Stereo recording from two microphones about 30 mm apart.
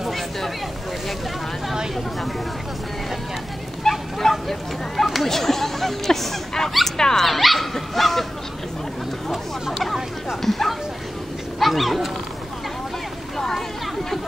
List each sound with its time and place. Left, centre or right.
3.9 s bow-wow: centre
4.2 s speech: centre
5.0 s speech: centre
5.3 s speech: centre
7.2 s speech: centre
9.3 s speech: centre
10.4 s a sound: centre
11.6 s speech: centre
13.4 s a sound: centre